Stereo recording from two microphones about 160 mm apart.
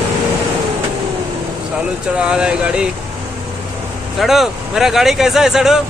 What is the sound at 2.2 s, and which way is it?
Speech, 5° right (ahead or behind).